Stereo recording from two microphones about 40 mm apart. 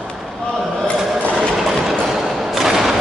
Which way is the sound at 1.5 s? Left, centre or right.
Centre.